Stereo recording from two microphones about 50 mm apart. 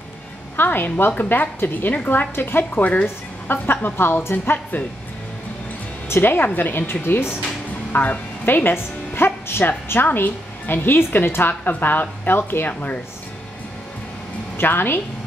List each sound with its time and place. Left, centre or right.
0.6 s a woman's voice: left
3.6 s speech: left
6.2 s speech: left
7.9 s speech: left
14.6 s speech: left